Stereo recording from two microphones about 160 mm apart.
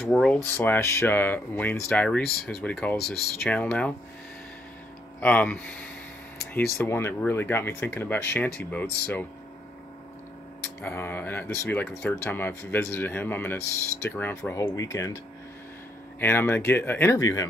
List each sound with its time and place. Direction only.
0.0 s speech: 5° left (ahead or behind)
0.6 s speech: 15° left (ahead or behind)
5.2 s speech: 10° left (ahead or behind)
10.8 s speech: 15° left (ahead or behind)
16.2 s speech: 15° left (ahead or behind)